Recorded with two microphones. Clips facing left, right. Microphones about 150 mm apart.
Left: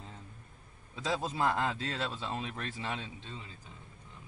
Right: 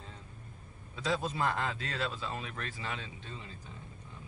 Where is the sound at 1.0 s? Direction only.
20° left (ahead or behind).